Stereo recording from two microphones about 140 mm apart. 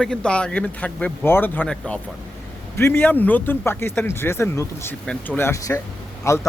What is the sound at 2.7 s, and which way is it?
A man's voice, 15° left (ahead or behind).